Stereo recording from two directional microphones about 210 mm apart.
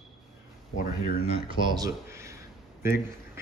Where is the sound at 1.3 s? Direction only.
20° right (ahead or behind).